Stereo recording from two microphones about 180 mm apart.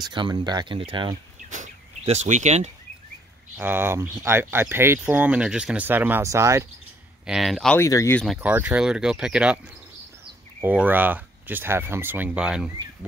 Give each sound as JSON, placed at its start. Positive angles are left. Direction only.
{"t": 0.0, "sound": "speech", "side_deg": -25}
{"t": 1.5, "sound": "bird", "side_deg": -40}
{"t": 3.5, "sound": "speech", "side_deg": -10}
{"t": 7.2, "sound": "speech", "side_deg": 0}
{"t": 7.8, "sound": "speech", "side_deg": 15}
{"t": 8.4, "sound": "speech", "side_deg": -10}
{"t": 10.6, "sound": "speech", "side_deg": -10}